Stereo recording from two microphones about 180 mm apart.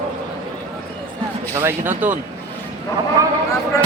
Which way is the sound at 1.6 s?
10° right (ahead or behind).